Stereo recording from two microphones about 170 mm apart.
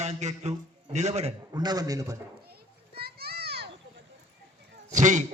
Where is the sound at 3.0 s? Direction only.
65° right (ahead or behind).